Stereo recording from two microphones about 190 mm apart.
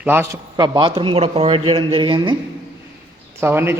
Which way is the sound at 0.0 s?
10° right (ahead or behind).